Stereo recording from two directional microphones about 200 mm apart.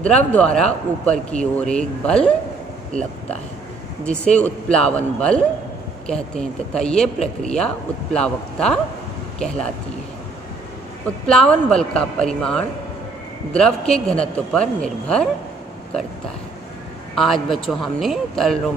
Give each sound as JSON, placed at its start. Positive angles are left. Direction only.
{"t": 0.1, "sound": "speech", "side_deg": 5}
{"t": 2.9, "sound": "speech", "side_deg": -40}
{"t": 4.0, "sound": "speech", "side_deg": 5}
{"t": 11.2, "sound": "speech", "side_deg": 5}
{"t": 17.1, "sound": "speech", "side_deg": 0}